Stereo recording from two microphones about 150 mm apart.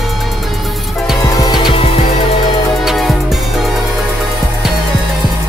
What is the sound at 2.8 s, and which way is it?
Music, 5° right (ahead or behind).